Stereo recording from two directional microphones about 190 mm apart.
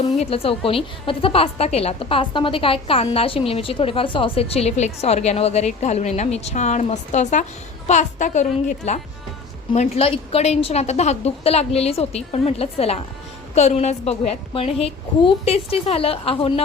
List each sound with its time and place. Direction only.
0.2 s a woman's voice: 30° left (ahead or behind)